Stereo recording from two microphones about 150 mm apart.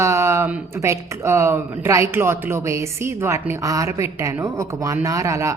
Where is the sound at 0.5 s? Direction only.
20° right (ahead or behind).